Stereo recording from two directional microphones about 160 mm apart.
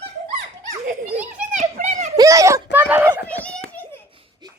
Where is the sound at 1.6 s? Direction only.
50° right (ahead or behind).